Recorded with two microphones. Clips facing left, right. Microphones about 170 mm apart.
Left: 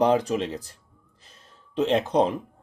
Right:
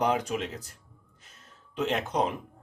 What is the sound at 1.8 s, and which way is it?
Speech, 30° left (ahead or behind).